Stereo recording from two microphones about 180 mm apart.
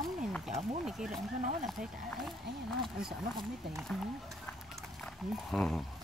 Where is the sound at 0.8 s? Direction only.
Centre (ahead or behind).